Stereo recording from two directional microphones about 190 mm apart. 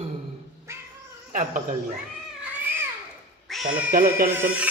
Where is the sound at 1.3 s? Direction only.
40° right (ahead or behind).